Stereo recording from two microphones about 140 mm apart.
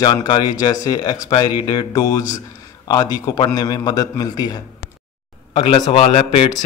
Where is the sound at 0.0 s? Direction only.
30° left (ahead or behind).